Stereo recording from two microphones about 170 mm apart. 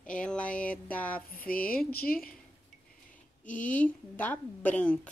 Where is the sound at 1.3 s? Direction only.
55° left (ahead or behind).